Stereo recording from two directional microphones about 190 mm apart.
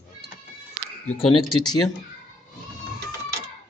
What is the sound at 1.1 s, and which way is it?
Speech, 30° left (ahead or behind).